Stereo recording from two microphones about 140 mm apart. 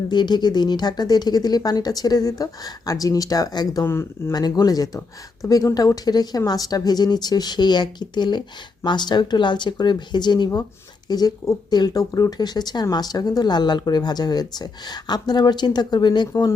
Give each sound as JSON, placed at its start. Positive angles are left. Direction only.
{"t": 0.1, "sound": "speech", "side_deg": 30}
{"t": 4.4, "sound": "speech", "side_deg": 30}